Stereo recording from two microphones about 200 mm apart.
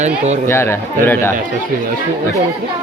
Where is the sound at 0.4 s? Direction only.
10° left (ahead or behind).